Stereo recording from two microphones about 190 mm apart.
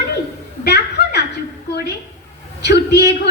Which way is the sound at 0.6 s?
60° left (ahead or behind).